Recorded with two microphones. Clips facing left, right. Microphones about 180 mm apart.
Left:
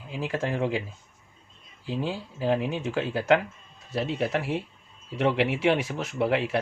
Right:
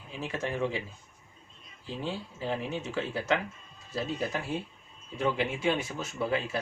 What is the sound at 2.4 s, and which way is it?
Speech, 85° left.